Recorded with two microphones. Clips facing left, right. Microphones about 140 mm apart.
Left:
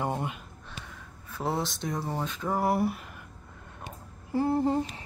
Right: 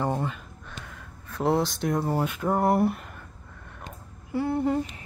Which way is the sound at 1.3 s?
Centre (ahead or behind).